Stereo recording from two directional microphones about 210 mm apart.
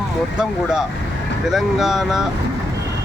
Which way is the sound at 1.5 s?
Centre (ahead or behind).